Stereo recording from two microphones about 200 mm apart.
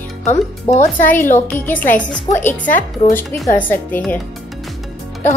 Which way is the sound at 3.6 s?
10° left (ahead or behind).